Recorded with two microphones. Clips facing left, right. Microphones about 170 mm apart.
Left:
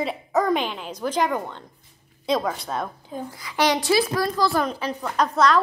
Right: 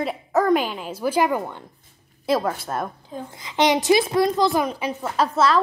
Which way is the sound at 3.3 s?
20° right (ahead or behind).